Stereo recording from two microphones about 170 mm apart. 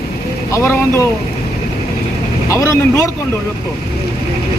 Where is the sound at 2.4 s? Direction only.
15° left (ahead or behind).